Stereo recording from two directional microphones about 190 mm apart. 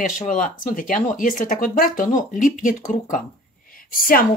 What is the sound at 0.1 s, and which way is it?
Speech, 45° left (ahead or behind).